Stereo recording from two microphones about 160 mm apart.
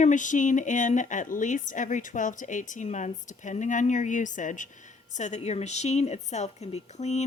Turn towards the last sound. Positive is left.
turn(degrees=45)  # may be behind; listen again after turning